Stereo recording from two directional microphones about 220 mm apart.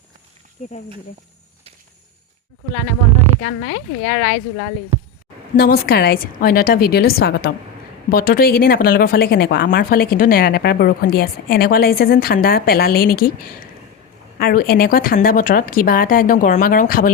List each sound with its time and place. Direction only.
3.4 s a woman's voice: 55° left (ahead or behind)
4.9 s a sound: 10° right (ahead or behind)
5.5 s a woman's voice: 45° left (ahead or behind)